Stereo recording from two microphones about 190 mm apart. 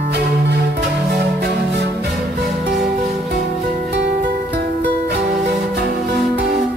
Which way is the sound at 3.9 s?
65° right (ahead or behind).